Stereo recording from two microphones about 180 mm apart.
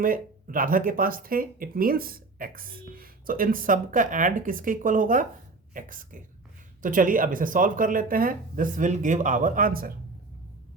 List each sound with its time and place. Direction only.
0.0 s speech: 50° right (ahead or behind)